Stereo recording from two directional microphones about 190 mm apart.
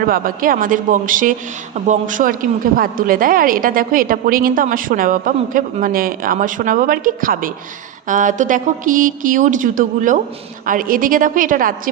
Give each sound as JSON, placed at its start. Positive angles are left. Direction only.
{"t": 0.1, "sound": "speech", "side_deg": -50}